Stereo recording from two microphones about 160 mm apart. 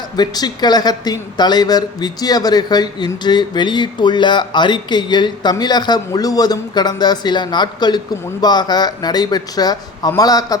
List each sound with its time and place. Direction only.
0.2 s a man's voice: 25° left (ahead or behind)